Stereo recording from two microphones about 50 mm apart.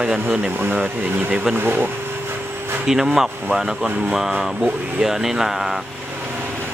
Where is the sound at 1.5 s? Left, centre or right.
Right.